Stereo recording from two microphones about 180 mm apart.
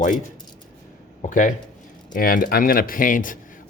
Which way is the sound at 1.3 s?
45° left (ahead or behind).